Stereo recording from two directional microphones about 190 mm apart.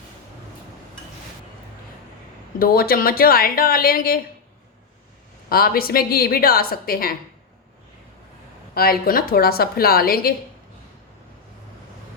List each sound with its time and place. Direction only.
2.6 s a woman's voice: 50° left (ahead or behind)
5.5 s a woman's voice: 50° left (ahead or behind)
8.7 s a woman's voice: 50° left (ahead or behind)